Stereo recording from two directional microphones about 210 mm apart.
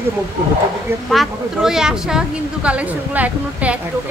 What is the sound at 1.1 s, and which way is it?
A woman's voice, centre (ahead or behind).